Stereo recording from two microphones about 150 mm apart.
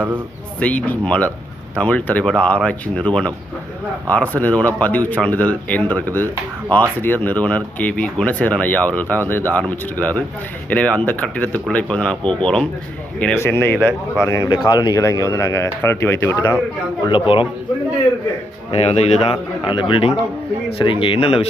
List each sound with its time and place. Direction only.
0.6 s speech: 10° left (ahead or behind)
4.1 s speech: 10° left (ahead or behind)
17.1 s speech: 35° left (ahead or behind)
18.7 s speech: 45° left (ahead or behind)
19.3 s speech: 35° left (ahead or behind)